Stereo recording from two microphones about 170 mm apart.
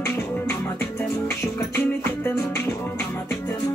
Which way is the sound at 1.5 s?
10° left (ahead or behind).